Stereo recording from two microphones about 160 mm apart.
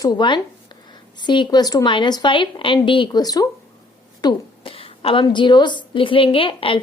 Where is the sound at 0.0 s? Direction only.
25° left (ahead or behind).